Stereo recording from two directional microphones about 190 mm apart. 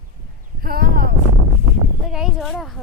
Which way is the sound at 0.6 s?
50° right (ahead or behind).